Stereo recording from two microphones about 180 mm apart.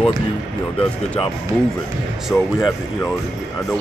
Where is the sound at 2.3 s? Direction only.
15° left (ahead or behind).